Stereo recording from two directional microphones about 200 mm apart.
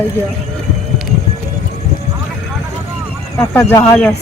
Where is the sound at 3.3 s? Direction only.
10° left (ahead or behind).